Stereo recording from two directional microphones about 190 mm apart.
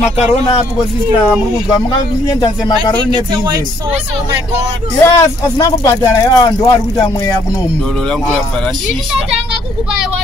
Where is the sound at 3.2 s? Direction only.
25° right (ahead or behind).